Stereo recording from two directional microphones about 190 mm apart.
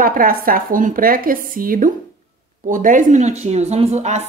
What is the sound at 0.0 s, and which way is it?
Speech, 45° right (ahead or behind).